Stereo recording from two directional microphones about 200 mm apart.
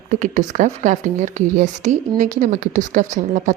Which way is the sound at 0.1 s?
40° right (ahead or behind).